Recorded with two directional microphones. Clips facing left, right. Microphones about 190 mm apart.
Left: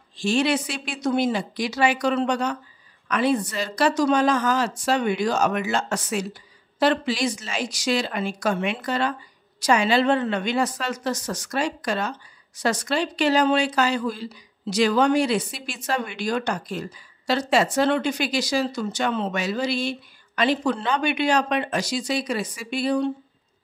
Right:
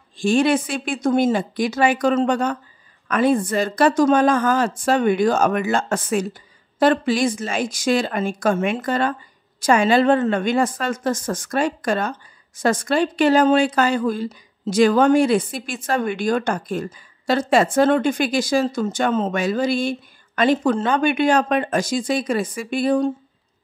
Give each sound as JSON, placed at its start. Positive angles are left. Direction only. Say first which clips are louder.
{"t": 0.2, "sound": "a woman's voice", "louder": "right 5 dB", "side_deg": -50}